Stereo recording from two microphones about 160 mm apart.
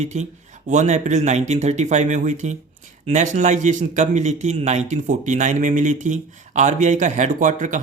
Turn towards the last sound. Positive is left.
turn(degrees=-50)  # may be behind; listen again after turning